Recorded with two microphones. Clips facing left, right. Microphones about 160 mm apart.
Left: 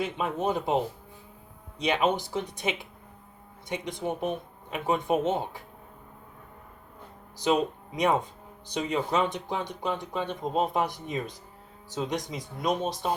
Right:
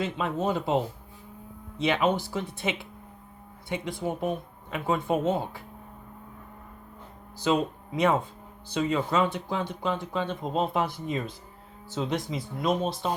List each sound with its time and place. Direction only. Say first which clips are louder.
0.0 s speech: even; 15° left (ahead or behind)
1.8 s speech: right 1 dB; 20° left (ahead or behind)
7.3 s speech: even; 15° left (ahead or behind)